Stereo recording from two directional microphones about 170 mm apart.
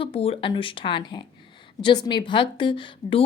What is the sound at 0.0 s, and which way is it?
A woman's voice, 35° left (ahead or behind).